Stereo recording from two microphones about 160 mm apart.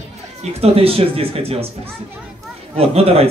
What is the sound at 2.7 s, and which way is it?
Speech, 40° right (ahead or behind).